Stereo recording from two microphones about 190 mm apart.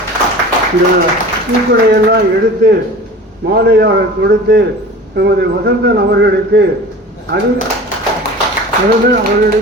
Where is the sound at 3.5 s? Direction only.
60° right (ahead or behind).